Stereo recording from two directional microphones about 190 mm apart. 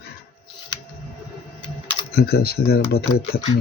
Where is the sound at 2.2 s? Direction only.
55° left (ahead or behind).